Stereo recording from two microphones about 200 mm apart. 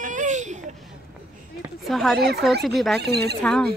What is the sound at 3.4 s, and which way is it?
Speech, centre (ahead or behind).